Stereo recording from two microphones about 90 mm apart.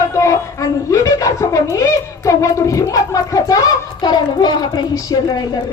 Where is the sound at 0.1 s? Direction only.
35° left (ahead or behind).